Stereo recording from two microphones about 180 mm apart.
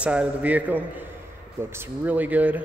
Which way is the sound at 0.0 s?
5° right (ahead or behind).